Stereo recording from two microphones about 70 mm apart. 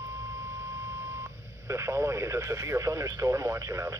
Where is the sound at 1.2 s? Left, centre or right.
Right.